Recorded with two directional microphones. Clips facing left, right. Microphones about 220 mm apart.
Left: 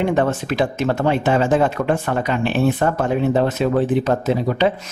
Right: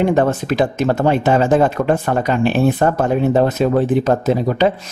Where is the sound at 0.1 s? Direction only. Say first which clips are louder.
Right 3 dB; 40° right (ahead or behind).